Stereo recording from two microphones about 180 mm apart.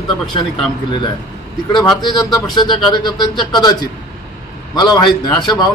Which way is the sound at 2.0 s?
25° left (ahead or behind).